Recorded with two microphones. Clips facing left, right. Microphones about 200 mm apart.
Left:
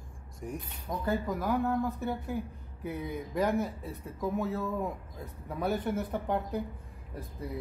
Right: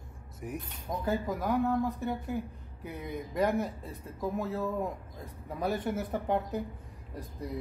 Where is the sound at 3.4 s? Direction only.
Centre (ahead or behind).